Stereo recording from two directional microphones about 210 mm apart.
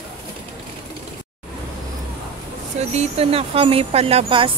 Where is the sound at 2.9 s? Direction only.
30° right (ahead or behind).